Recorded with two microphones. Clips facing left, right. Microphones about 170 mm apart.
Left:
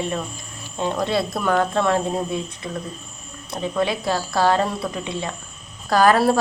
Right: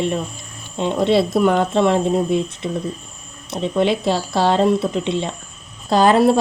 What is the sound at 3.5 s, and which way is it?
Speech, 25° right (ahead or behind).